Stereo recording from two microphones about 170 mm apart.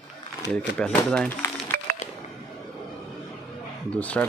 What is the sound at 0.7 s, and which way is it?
Speech, 5° left (ahead or behind).